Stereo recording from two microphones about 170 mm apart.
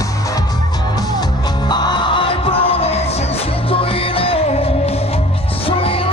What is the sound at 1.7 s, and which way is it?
Music, 25° left (ahead or behind).